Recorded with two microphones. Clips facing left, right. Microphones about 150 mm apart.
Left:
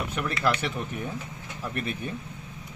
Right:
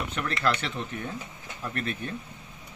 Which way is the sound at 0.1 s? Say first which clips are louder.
Left 1 dB; 10° left (ahead or behind).